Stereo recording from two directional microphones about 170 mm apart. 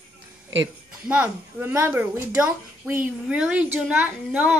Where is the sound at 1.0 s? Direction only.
10° right (ahead or behind).